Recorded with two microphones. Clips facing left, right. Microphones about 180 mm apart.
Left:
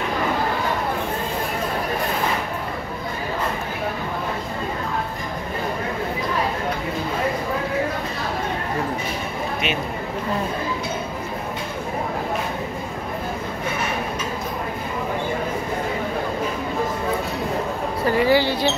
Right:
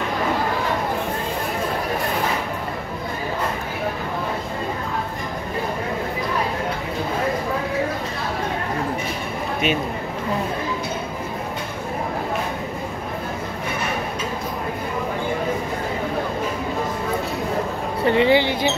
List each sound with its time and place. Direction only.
18.0 s basketball bounce: 20° right (ahead or behind)